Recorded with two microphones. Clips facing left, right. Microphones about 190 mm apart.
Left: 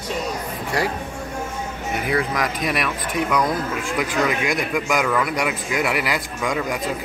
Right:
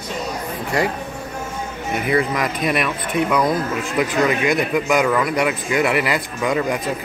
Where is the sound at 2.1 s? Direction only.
5° right (ahead or behind).